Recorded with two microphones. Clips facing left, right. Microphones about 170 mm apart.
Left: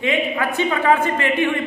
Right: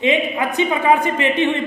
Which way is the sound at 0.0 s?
20° right (ahead or behind).